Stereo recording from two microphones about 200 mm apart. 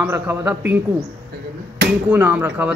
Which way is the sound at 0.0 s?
10° right (ahead or behind).